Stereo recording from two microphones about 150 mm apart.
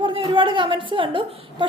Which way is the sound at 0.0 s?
35° right (ahead or behind).